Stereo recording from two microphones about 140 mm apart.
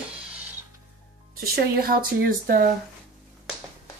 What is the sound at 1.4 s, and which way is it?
Speech, 90° right.